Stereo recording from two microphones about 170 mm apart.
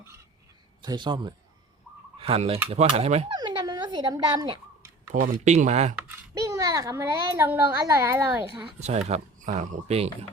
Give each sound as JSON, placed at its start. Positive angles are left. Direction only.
{"t": 0.8, "sound": "speech", "side_deg": -25}
{"t": 3.3, "sound": "dog", "side_deg": -25}
{"t": 5.2, "sound": "speech", "side_deg": -45}
{"t": 6.1, "sound": "a child's voice", "side_deg": -20}
{"t": 8.6, "sound": "speech", "side_deg": -40}